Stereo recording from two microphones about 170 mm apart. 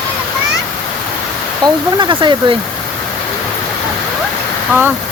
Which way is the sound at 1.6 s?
25° right (ahead or behind).